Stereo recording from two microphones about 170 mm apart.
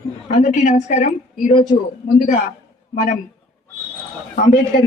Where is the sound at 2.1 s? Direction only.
45° left (ahead or behind).